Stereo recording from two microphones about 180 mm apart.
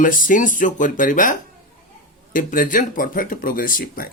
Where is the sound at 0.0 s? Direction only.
50° left (ahead or behind).